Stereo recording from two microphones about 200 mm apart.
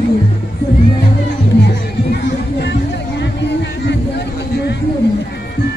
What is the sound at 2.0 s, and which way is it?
Music, 55° left (ahead or behind).